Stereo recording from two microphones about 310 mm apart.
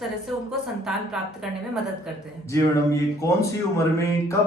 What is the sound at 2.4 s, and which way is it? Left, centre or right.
A man's voice, centre.